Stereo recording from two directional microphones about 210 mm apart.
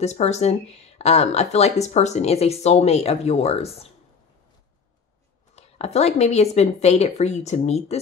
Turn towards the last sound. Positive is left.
turn(degrees=30)  # may be behind; listen again after turning